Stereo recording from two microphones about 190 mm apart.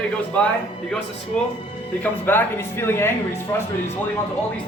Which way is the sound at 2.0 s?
10° left (ahead or behind).